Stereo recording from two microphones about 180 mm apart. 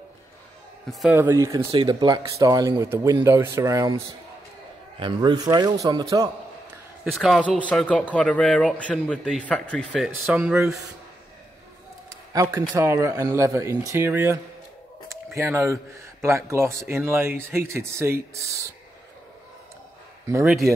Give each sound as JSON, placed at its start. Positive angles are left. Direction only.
{"t": 0.9, "sound": "a man's voice", "side_deg": -5}
{"t": 7.2, "sound": "a man's voice", "side_deg": 0}
{"t": 9.9, "sound": "speech", "side_deg": -5}
{"t": 12.3, "sound": "speech", "side_deg": -15}